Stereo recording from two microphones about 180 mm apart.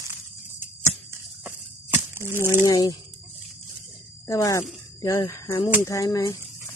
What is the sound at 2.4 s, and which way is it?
Speech, 20° left (ahead or behind).